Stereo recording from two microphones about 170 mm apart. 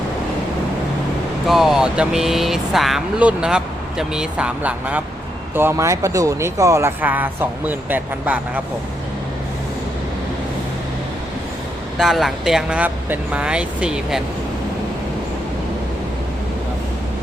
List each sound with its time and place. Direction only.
1.5 s speech: centre (ahead or behind)
11.9 s speech: centre (ahead or behind)